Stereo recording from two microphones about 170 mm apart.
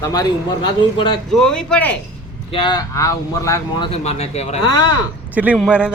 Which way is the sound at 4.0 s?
40° left (ahead or behind).